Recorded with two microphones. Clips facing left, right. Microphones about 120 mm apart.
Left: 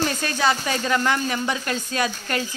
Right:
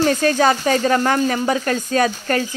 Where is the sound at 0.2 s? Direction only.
45° right (ahead or behind).